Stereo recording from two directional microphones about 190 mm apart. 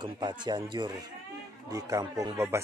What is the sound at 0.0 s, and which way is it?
A woman's voice, 25° right (ahead or behind).